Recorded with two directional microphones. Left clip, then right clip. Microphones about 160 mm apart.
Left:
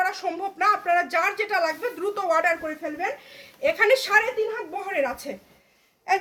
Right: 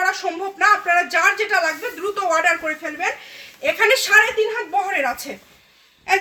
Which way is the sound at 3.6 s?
15° left (ahead or behind).